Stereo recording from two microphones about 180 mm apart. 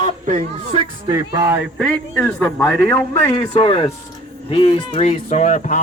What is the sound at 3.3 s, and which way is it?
Speech, 25° left (ahead or behind).